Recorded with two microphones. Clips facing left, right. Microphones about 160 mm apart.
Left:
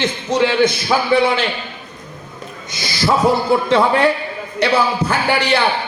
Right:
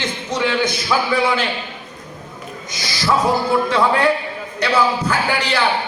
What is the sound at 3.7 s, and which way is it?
A man's voice, 25° left (ahead or behind).